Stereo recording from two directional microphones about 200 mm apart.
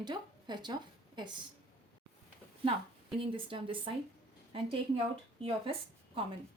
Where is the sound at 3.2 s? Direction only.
25° right (ahead or behind).